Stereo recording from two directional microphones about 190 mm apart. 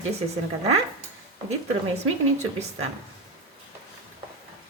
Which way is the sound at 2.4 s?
35° right (ahead or behind).